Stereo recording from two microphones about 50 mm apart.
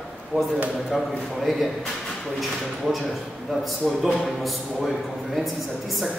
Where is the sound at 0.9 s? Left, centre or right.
Centre.